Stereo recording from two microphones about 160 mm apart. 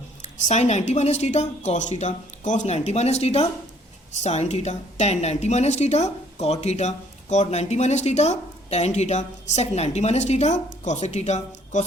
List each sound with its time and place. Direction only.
0.2 s a woman's voice: 45° left (ahead or behind)